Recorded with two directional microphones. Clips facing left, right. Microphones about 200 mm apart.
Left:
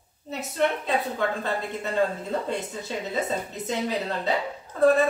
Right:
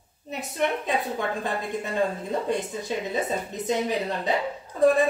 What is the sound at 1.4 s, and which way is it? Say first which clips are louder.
A woman's voice: even; 15° right (ahead or behind).